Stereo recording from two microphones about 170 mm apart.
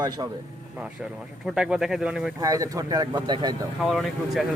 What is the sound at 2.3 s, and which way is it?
A man's voice, 20° right (ahead or behind).